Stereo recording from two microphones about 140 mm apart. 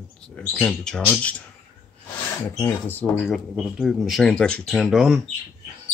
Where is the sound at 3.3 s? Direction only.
5° right (ahead or behind).